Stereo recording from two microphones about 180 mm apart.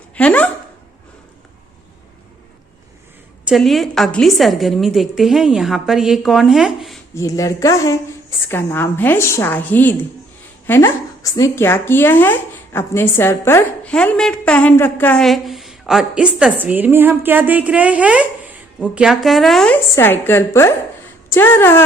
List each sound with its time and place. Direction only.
0.2 s a woman's voice: 10° left (ahead or behind)
3.5 s speech: centre (ahead or behind)
7.2 s a woman's voice: 20° left (ahead or behind)